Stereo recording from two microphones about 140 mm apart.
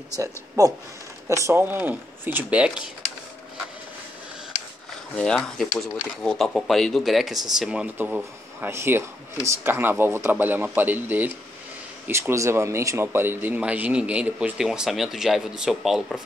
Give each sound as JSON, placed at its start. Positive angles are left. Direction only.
{"t": 0.1, "sound": "speech", "side_deg": -25}
{"t": 5.1, "sound": "speech", "side_deg": 5}